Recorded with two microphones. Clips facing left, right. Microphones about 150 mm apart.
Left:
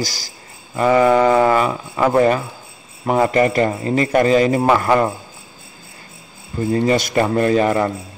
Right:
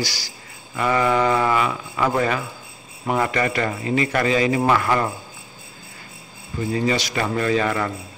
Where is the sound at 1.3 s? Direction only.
35° left (ahead or behind).